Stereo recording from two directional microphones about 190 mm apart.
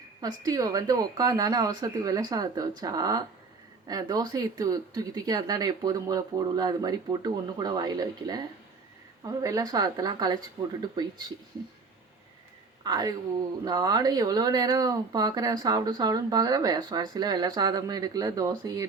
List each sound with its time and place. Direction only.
0.2 s speech: 20° right (ahead or behind)
12.8 s speech: 20° right (ahead or behind)